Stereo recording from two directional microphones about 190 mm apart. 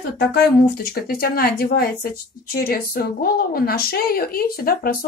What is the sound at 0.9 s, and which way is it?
Speech, 50° left (ahead or behind).